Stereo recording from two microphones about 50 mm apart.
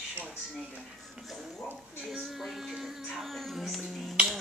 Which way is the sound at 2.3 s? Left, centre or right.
Centre.